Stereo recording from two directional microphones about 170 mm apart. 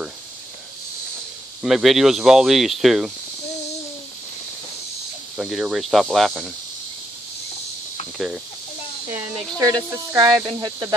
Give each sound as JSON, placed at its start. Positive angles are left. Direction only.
{"t": 1.6, "sound": "speech", "side_deg": 0}
{"t": 5.4, "sound": "speech", "side_deg": -5}
{"t": 9.6, "sound": "speech", "side_deg": -20}